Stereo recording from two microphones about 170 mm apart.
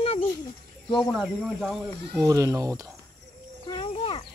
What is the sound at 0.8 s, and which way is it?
Speech, 25° left (ahead or behind).